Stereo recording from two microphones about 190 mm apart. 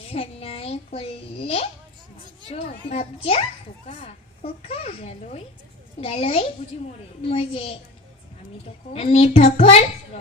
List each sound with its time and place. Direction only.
0.1 s a child's voice: 30° left (ahead or behind)
8.9 s a child's voice: 35° left (ahead or behind)